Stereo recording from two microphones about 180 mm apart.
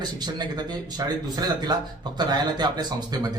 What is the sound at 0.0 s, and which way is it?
A man's voice, 25° right (ahead or behind).